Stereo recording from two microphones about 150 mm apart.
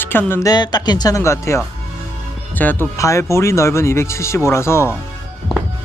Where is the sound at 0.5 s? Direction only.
30° left (ahead or behind).